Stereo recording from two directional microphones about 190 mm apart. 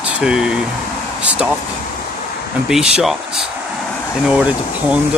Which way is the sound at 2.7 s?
5° right (ahead or behind).